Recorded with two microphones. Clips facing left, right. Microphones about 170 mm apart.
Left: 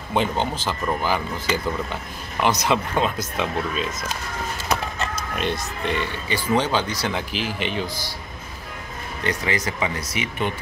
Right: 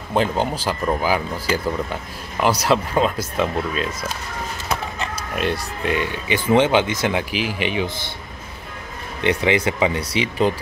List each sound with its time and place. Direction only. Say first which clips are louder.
0.1 s speech: right 3 dB; 5° right (ahead or behind)
5.3 s speech: right 5 dB; 5° right (ahead or behind)
9.2 s speech: right 7 dB; 25° right (ahead or behind)